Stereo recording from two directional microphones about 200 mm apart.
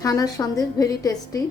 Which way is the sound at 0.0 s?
15° left (ahead or behind).